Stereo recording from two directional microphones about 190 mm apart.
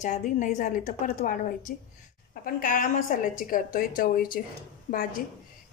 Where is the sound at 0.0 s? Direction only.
45° left (ahead or behind).